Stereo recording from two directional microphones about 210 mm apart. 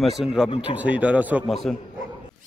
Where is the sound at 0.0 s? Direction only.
Centre (ahead or behind).